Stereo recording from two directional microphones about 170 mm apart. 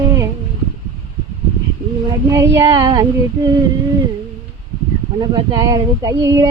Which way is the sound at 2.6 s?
25° right (ahead or behind).